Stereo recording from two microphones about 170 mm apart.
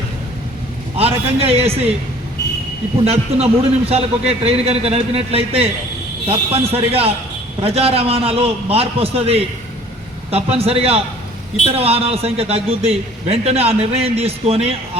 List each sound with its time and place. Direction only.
0.9 s a man's voice: 35° right (ahead or behind)
3.0 s a man's voice: 35° right (ahead or behind)